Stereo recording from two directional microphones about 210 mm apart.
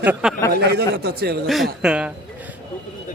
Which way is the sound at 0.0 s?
5° right (ahead or behind).